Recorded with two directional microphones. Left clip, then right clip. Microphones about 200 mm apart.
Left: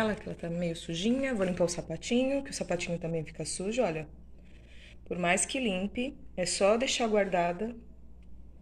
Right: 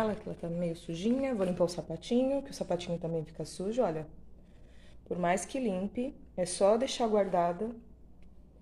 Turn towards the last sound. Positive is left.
turn(degrees=-5)  # may be behind; listen again after turning